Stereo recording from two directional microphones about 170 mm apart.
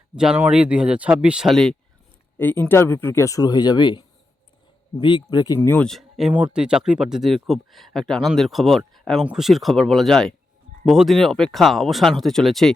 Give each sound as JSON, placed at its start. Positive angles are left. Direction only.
{"t": 0.2, "sound": "speech", "side_deg": -5}
{"t": 2.4, "sound": "speech", "side_deg": 10}
{"t": 5.5, "sound": "speech", "side_deg": 10}